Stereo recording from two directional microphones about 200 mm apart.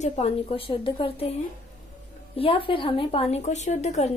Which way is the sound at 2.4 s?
25° left (ahead or behind).